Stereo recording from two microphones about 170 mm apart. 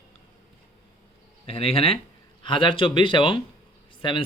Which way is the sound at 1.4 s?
35° left (ahead or behind).